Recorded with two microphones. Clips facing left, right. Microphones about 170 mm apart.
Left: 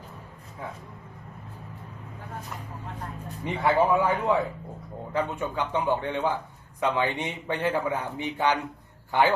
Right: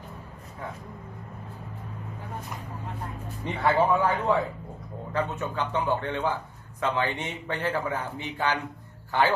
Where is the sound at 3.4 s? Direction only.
10° left (ahead or behind).